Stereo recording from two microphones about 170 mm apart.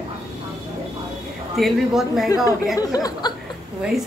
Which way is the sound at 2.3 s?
20° left (ahead or behind).